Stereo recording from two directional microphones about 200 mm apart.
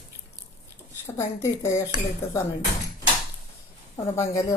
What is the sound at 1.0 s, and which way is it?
Speech, 15° left (ahead or behind).